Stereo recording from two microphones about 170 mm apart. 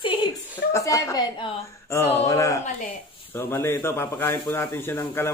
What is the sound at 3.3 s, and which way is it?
Speech, 15° left (ahead or behind).